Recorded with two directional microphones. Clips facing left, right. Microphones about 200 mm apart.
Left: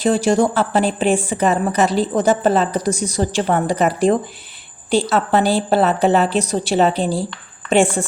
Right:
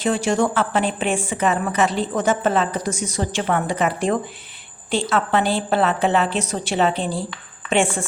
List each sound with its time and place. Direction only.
0.0 s a woman's voice: 35° left (ahead or behind)